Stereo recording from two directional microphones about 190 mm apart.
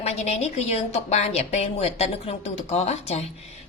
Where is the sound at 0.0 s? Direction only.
35° left (ahead or behind).